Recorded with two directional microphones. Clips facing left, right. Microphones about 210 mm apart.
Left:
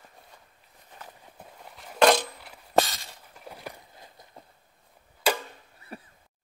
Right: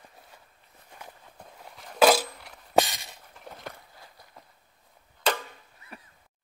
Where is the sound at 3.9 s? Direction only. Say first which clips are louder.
Left 2 dB; 20° left (ahead or behind).